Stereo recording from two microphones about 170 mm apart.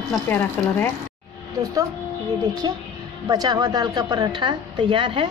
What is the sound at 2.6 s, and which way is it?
A woman's voice, 25° right (ahead or behind).